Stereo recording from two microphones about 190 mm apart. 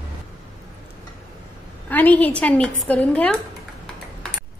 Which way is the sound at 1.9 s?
10° left (ahead or behind).